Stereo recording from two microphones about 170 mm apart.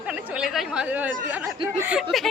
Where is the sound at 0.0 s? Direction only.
5° right (ahead or behind).